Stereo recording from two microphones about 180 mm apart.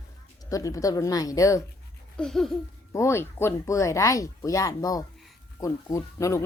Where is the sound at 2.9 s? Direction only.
15° left (ahead or behind).